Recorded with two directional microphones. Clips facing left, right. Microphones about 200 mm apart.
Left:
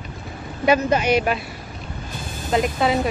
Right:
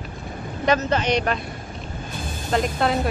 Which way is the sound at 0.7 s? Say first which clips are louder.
Left 3 dB; 10° left (ahead or behind).